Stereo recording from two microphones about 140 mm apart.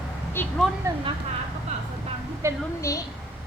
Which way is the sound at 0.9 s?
20° right (ahead or behind).